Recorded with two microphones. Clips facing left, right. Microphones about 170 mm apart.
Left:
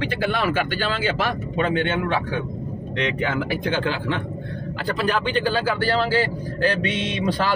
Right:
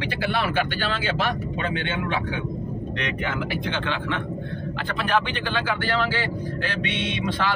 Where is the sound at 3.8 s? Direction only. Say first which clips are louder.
Left 3 dB; 35° left (ahead or behind).